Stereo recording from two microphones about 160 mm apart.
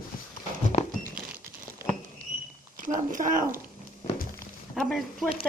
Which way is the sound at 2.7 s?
55° right (ahead or behind).